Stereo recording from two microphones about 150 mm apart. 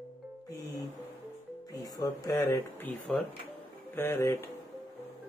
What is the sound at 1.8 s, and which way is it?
Speech, 25° left (ahead or behind).